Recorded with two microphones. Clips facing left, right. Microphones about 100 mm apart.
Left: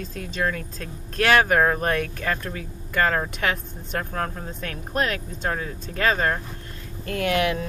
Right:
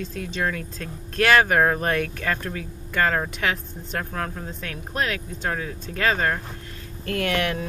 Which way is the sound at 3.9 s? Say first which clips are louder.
Left 1 dB; 30° left (ahead or behind).